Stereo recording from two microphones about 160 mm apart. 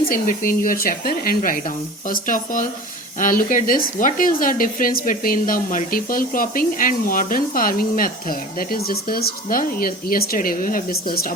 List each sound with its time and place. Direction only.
0.1 s speech: 60° left (ahead or behind)